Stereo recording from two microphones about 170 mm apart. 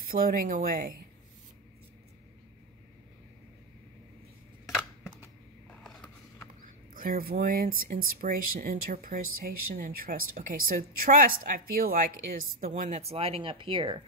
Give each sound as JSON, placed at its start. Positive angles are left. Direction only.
{"t": 0.1, "sound": "speech", "side_deg": -55}
{"t": 6.9, "sound": "speech", "side_deg": -55}